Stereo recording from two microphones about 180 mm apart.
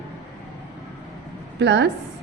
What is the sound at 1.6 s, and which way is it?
Speech, 75° right (ahead or behind).